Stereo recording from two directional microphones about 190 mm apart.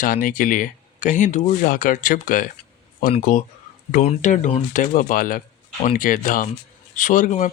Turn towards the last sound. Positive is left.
turn(degrees=40)  # may be behind; listen again after turning